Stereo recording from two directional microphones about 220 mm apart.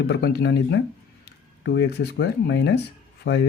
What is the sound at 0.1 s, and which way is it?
Speech, 50° left (ahead or behind).